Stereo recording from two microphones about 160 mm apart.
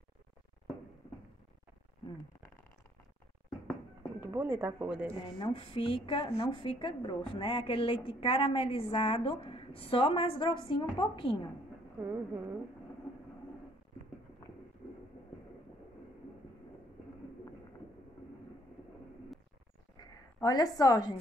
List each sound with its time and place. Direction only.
4.2 s speech: 15° right (ahead or behind)
5.4 s a woman's voice: 35° left (ahead or behind)
12.0 s speech: 10° right (ahead or behind)
20.4 s a woman's voice: 25° left (ahead or behind)